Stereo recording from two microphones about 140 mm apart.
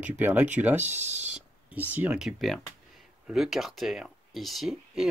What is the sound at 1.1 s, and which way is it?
Speech, 55° right (ahead or behind).